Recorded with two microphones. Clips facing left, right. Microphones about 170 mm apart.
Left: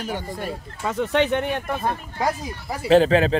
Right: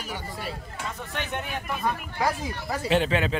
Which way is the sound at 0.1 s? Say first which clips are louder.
Left 6 dB; 50° left (ahead or behind).